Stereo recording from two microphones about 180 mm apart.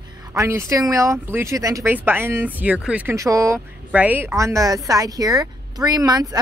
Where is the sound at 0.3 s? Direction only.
15° right (ahead or behind).